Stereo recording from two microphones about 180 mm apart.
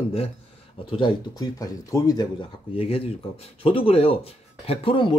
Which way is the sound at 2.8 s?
35° left (ahead or behind).